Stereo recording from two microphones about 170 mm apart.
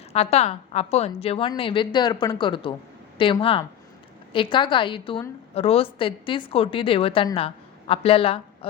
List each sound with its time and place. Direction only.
0.1 s a woman's voice: 40° left (ahead or behind)